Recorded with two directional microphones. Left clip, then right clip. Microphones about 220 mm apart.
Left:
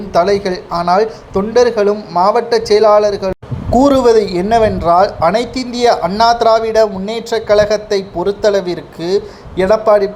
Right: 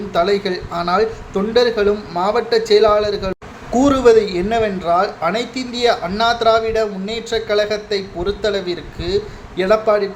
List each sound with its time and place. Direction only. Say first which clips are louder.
0.1 s a man's voice: left 5 dB; 15° left (ahead or behind)